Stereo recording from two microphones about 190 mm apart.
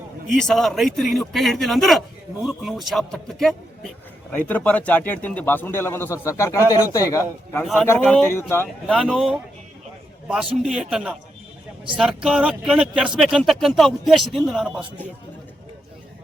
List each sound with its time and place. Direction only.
0.3 s speech: centre (ahead or behind)
7.6 s speech: centre (ahead or behind)
9.0 s speech: centre (ahead or behind)
10.5 s speech: 5° right (ahead or behind)